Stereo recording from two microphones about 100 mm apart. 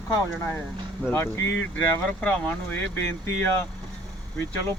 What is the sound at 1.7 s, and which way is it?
A man's voice, 15° left (ahead or behind).